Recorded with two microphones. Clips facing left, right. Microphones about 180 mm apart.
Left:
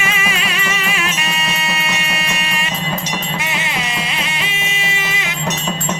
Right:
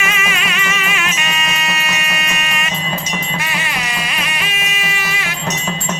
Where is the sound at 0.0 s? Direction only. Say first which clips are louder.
Even; 30° left (ahead or behind).